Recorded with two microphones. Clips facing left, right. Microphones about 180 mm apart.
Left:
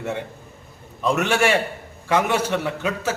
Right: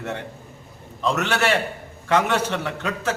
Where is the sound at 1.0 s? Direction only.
10° left (ahead or behind).